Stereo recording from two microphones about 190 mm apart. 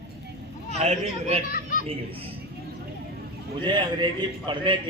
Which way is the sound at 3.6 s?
25° right (ahead or behind).